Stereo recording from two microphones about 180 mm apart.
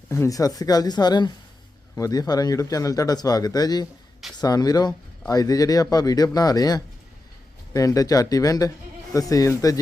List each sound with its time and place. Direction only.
0.1 s speech: 15° left (ahead or behind)